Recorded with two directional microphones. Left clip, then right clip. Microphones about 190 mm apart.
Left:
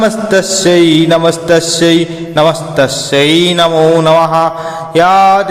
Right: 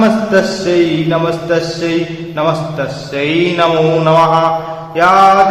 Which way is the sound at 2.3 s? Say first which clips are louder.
Left 6 dB; 45° left (ahead or behind).